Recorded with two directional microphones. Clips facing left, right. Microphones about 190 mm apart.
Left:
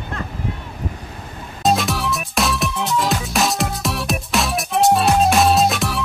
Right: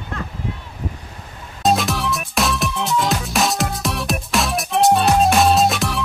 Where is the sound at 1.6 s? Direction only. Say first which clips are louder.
Even; centre (ahead or behind).